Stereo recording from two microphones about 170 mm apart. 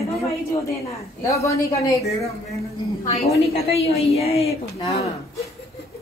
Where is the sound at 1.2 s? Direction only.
20° left (ahead or behind).